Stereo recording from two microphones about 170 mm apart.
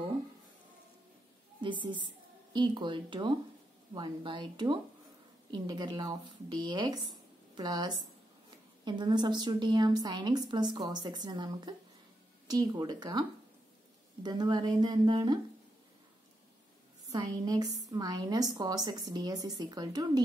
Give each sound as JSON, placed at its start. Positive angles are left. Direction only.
{"t": 1.6, "sound": "a woman's voice", "side_deg": -30}
{"t": 14.2, "sound": "a woman's voice", "side_deg": -25}
{"t": 17.1, "sound": "a woman's voice", "side_deg": -20}